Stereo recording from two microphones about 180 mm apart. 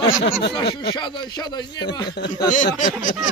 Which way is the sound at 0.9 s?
25° left (ahead or behind).